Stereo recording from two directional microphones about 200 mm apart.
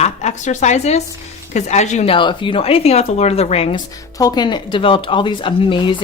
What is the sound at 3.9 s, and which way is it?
Speech, 20° left (ahead or behind).